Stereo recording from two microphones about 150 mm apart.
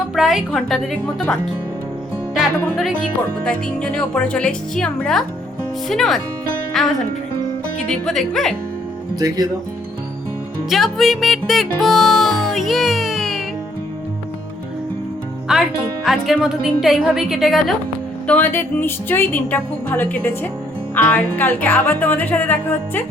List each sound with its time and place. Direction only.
0.2 s a woman's voice: centre (ahead or behind)
2.4 s a woman's voice: centre (ahead or behind)
9.1 s speech: 25° right (ahead or behind)
10.7 s music: centre (ahead or behind)
15.5 s a woman's voice: 5° right (ahead or behind)
18.3 s speech: 10° left (ahead or behind)